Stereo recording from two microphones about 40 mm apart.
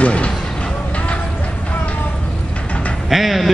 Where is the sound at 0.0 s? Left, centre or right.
Left.